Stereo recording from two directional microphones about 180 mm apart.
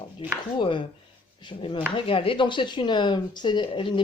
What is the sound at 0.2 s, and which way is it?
A man's voice, 30° left (ahead or behind).